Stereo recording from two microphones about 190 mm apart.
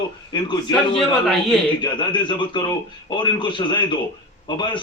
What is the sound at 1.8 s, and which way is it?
Speech, 25° left (ahead or behind).